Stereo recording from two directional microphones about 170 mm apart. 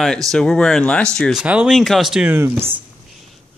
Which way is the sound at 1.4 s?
5° right (ahead or behind).